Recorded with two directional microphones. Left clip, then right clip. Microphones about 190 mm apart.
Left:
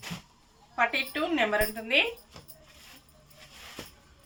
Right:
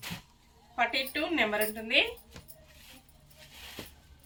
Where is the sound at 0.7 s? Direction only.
15° left (ahead or behind).